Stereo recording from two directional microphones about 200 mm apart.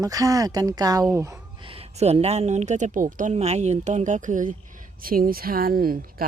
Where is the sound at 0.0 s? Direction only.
15° right (ahead or behind).